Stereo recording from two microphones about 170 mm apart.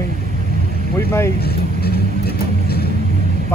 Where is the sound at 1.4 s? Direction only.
70° left (ahead or behind).